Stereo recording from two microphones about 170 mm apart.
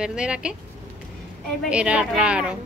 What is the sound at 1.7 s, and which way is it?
Speech, 5° right (ahead or behind).